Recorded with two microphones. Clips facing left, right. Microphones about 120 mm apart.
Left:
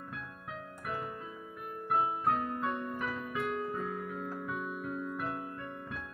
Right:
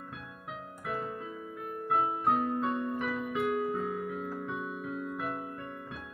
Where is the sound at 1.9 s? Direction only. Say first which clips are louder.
Right 2 dB; 30° right (ahead or behind).